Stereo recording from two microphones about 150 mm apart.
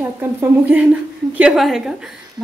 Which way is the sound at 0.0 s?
15° right (ahead or behind).